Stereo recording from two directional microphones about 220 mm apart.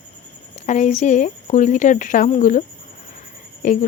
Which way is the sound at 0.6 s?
35° left (ahead or behind).